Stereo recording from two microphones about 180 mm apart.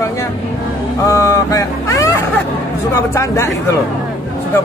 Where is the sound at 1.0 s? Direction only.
20° left (ahead or behind).